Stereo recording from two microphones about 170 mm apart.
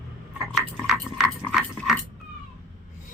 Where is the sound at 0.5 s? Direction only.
Centre (ahead or behind).